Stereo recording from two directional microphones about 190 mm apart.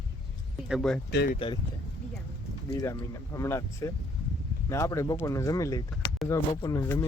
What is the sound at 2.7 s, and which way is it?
Speech, 15° left (ahead or behind).